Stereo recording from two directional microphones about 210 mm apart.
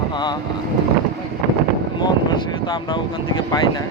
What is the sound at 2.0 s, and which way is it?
Speech, 20° left (ahead or behind).